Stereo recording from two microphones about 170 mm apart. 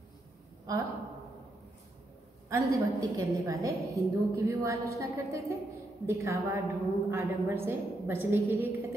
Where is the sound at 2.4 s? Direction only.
20° right (ahead or behind).